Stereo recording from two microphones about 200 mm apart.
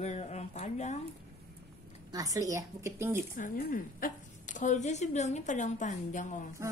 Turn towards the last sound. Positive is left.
turn(degrees=40)  # may be behind; listen again after turning